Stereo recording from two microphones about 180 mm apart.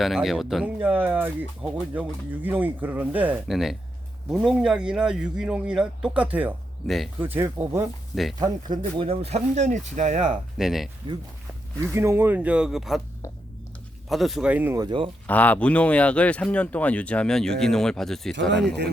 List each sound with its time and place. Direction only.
0.0 s speech: centre (ahead or behind)
7.2 s speech: 10° right (ahead or behind)
8.1 s speech: centre (ahead or behind)
8.4 s speech: 25° right (ahead or behind)
10.6 s speech: centre (ahead or behind)
11.1 s speech: 25° right (ahead or behind)
11.9 s speech: 15° right (ahead or behind)
14.1 s speech: centre (ahead or behind)
14.8 s speech: 25° right (ahead or behind)
15.3 s speech: 10° left (ahead or behind)